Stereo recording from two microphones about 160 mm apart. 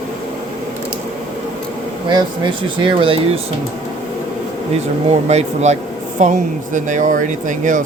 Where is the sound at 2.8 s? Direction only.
30° right (ahead or behind).